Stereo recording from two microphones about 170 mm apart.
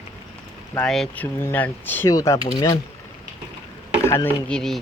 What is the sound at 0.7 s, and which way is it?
Speech, 5° left (ahead or behind).